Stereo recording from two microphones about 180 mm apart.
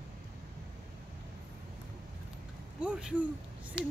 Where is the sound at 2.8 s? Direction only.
5° right (ahead or behind).